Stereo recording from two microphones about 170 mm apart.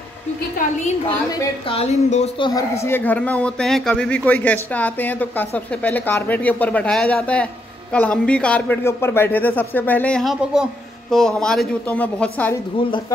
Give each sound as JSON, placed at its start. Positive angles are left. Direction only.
{"t": 1.7, "sound": "speech", "side_deg": 40}
{"t": 2.7, "sound": "speech", "side_deg": 15}